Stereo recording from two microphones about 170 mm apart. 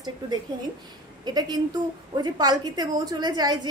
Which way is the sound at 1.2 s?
25° right (ahead or behind).